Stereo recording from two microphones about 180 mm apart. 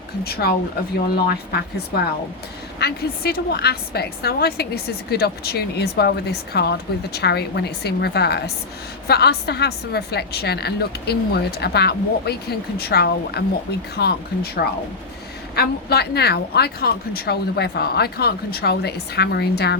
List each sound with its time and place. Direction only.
0.3 s a woman's voice: 60° left (ahead or behind)